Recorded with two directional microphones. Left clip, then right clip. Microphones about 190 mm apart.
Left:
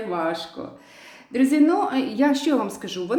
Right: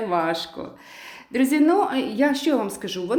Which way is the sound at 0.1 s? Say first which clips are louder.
Right 1 dB; 30° right (ahead or behind).